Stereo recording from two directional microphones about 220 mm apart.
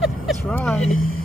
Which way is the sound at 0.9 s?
70° left (ahead or behind).